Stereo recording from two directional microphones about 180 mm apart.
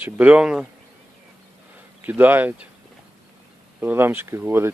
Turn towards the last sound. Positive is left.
turn(degrees=-10)  # may be behind; listen again after turning